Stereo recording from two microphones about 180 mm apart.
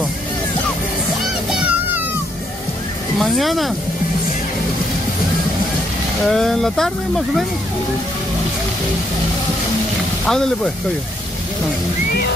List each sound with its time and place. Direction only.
1.5 s music: 5° right (ahead or behind)
3.2 s speech: centre (ahead or behind)
6.2 s speech: centre (ahead or behind)
10.2 s speech: 5° left (ahead or behind)